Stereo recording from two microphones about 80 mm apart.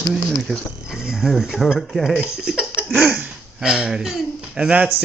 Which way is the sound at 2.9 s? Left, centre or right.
Centre.